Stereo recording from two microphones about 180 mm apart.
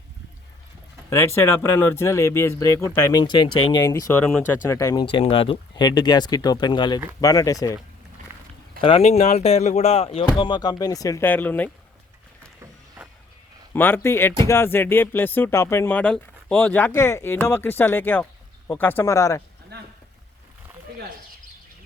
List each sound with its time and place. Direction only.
1.4 s speech: 15° left (ahead or behind)
4.2 s speech: 10° left (ahead or behind)
4.8 s speech: 20° left (ahead or behind)
5.1 s speech: 30° left (ahead or behind)
8.3 s a sound: 15° right (ahead or behind)
8.8 s speech: 35° left (ahead or behind); by 11.7 s 10° left (ahead or behind)
13.0 s vehicle: 10° right (ahead or behind)
13.7 s speech: 10° left (ahead or behind)